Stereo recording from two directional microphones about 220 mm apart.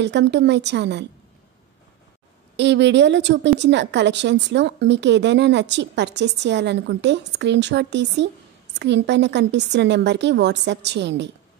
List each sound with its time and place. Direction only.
0.0 s a woman's voice: 50° right (ahead or behind)
2.5 s a woman's voice: 55° right (ahead or behind)